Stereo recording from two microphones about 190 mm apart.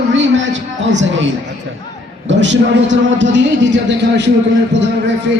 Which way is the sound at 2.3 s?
70° right (ahead or behind).